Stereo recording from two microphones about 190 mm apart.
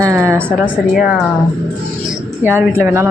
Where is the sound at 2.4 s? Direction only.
10° right (ahead or behind).